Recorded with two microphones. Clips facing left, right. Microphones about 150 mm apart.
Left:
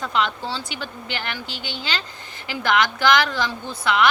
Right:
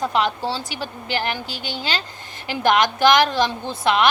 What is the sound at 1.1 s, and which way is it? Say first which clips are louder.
Speech: right 7 dB; 40° right (ahead or behind).